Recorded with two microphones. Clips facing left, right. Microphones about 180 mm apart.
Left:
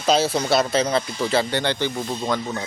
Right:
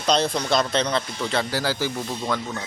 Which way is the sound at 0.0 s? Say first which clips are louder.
Left 2 dB; 5° left (ahead or behind).